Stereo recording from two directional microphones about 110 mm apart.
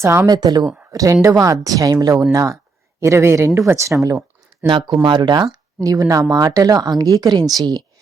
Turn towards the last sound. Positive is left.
turn(degrees=-35)  # may be behind; listen again after turning